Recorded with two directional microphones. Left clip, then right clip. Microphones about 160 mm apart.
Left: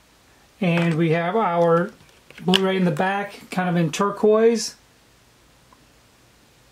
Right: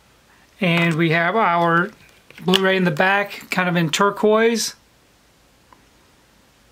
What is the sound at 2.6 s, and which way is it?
Speech, 25° right (ahead or behind).